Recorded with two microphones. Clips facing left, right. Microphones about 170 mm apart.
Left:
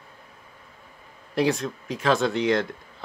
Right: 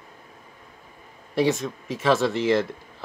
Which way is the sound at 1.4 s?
Centre (ahead or behind).